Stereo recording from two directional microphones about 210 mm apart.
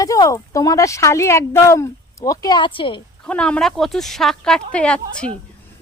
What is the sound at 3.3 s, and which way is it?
A woman's voice, 5° left (ahead or behind).